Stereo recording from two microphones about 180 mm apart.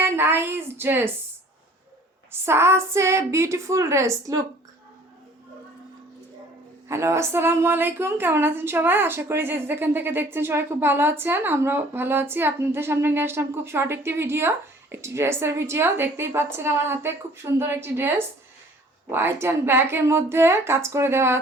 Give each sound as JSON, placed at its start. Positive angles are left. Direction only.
{"t": 0.0, "sound": "a woman's voice", "side_deg": -10}
{"t": 2.3, "sound": "a woman's voice", "side_deg": -15}
{"t": 6.8, "sound": "a woman's voice", "side_deg": -15}
{"t": 19.1, "sound": "a woman's voice", "side_deg": -15}